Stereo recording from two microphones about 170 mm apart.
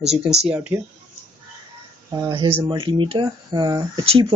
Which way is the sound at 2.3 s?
30° right (ahead or behind).